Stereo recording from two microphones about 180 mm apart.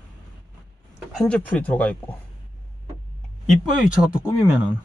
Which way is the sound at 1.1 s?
5° left (ahead or behind).